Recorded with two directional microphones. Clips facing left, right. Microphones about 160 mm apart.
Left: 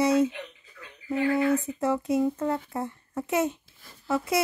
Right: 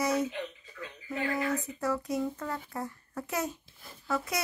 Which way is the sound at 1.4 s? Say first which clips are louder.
Left 7 dB; 25° left (ahead or behind).